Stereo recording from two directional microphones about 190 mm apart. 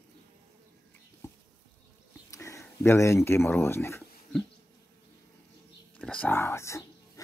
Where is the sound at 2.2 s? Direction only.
15° left (ahead or behind).